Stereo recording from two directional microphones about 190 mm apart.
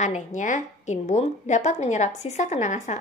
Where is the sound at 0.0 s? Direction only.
40° left (ahead or behind).